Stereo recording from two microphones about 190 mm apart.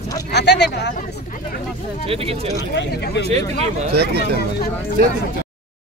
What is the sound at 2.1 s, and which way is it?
Speech, 30° right (ahead or behind).